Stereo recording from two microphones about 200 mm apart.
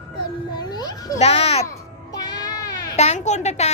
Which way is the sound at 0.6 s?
20° left (ahead or behind).